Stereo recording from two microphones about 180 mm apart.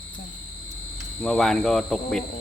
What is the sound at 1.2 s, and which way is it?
Speech, 5° left (ahead or behind).